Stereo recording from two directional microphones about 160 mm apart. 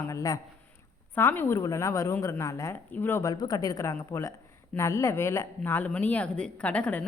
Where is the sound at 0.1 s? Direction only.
20° left (ahead or behind).